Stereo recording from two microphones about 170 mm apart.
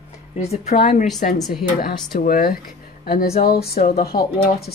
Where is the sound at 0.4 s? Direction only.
40° left (ahead or behind).